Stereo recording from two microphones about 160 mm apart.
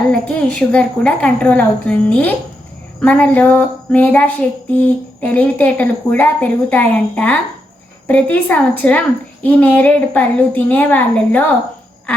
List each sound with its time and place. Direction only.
0.1 s speech: 5° left (ahead or behind)